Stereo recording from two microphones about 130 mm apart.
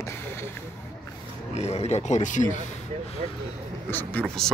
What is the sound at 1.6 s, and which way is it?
Speech, 55° left (ahead or behind).